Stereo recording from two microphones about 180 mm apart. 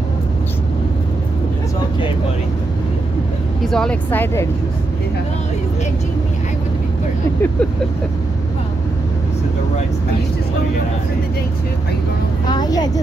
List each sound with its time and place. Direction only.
3.6 s speech: 5° left (ahead or behind)
12.4 s speech: 25° left (ahead or behind)